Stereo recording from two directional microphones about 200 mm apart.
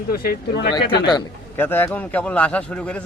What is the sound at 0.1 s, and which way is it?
Speech, 50° left (ahead or behind).